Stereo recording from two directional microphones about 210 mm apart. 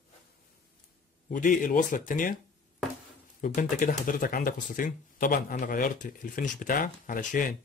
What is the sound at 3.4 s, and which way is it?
Speech, 40° left (ahead or behind).